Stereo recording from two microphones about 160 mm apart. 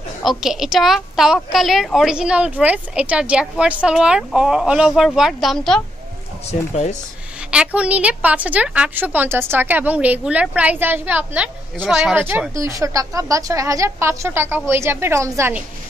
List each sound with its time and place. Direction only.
0.2 s a woman's voice: centre (ahead or behind)
6.7 s speech: 45° left (ahead or behind)
7.5 s a woman's voice: 10° right (ahead or behind)